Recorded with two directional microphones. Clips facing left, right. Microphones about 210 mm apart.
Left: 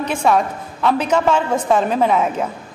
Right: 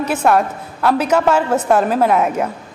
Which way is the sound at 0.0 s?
5° right (ahead or behind).